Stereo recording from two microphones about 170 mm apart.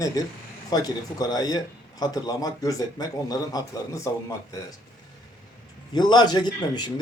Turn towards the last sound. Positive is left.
turn(degrees=25)  # may be behind; listen again after turning